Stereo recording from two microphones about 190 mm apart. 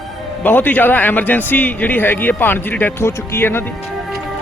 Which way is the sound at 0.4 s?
10° left (ahead or behind).